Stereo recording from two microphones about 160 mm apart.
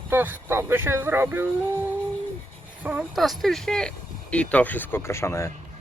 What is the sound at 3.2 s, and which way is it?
Speech, centre (ahead or behind).